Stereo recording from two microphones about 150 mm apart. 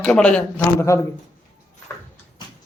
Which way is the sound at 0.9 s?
20° left (ahead or behind).